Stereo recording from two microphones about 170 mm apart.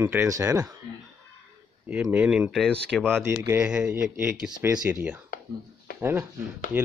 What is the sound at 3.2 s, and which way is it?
Speech, 15° right (ahead or behind).